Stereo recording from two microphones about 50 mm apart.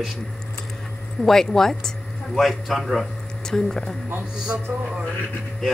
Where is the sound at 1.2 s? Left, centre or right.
Centre.